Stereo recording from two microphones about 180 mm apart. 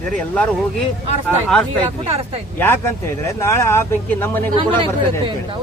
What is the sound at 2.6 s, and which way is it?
Speech, 10° left (ahead or behind).